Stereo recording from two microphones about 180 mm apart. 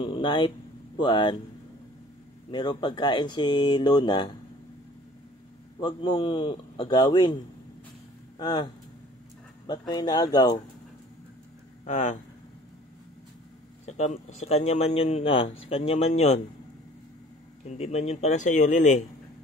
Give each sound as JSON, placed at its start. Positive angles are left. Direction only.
{"t": 0.0, "sound": "speech", "side_deg": 25}
{"t": 2.5, "sound": "speech", "side_deg": 25}
{"t": 5.8, "sound": "speech", "side_deg": 25}
{"t": 8.4, "sound": "speech", "side_deg": 25}
{"t": 9.7, "sound": "speech", "side_deg": 25}
{"t": 11.8, "sound": "speech", "side_deg": 40}
{"t": 13.8, "sound": "speech", "side_deg": 40}
{"t": 17.6, "sound": "speech", "side_deg": 35}